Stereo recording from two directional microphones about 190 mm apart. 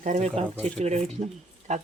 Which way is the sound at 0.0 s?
35° right (ahead or behind).